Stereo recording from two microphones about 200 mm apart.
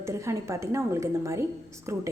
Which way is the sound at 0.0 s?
15° right (ahead or behind).